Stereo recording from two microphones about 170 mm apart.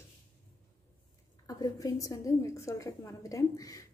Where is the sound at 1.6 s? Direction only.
20° left (ahead or behind).